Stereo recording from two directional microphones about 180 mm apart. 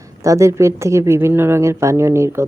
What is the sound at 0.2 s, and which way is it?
A woman's voice, 15° right (ahead or behind).